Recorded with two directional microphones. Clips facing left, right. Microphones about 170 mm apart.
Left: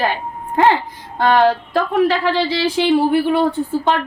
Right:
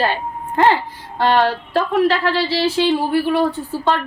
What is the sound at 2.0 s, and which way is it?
A woman's voice, 15° left (ahead or behind).